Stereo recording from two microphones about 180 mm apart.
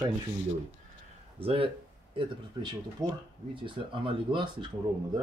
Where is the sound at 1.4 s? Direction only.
30° right (ahead or behind).